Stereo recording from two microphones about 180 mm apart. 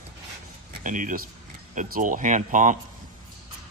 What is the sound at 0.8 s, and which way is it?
Speech, 45° right (ahead or behind).